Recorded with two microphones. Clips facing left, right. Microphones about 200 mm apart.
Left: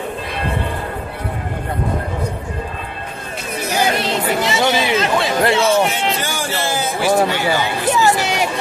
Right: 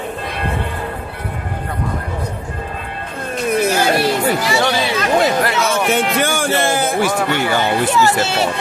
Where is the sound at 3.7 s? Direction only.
20° left (ahead or behind).